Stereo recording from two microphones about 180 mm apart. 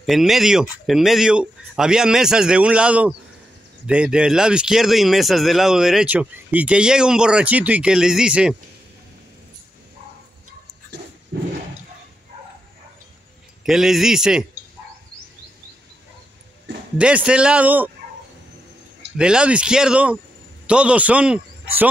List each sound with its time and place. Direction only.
0.0 s speech: centre (ahead or behind)
13.7 s speech: centre (ahead or behind)
17.0 s a man's voice: 5° right (ahead or behind)
19.1 s a man's voice: 5° right (ahead or behind)